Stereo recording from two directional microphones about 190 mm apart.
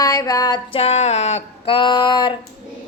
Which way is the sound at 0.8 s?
35° left (ahead or behind).